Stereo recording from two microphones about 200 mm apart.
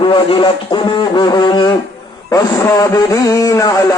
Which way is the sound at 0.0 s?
25° left (ahead or behind).